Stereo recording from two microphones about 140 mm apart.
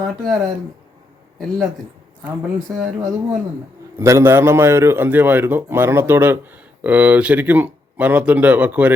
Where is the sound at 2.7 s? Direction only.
5° right (ahead or behind).